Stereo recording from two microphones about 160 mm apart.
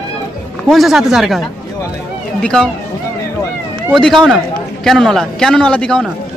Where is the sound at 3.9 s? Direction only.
5° left (ahead or behind).